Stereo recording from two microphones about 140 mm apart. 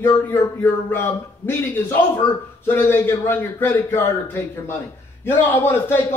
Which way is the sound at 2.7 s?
15° left (ahead or behind).